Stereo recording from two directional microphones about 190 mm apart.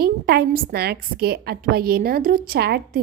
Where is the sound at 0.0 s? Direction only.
55° right (ahead or behind).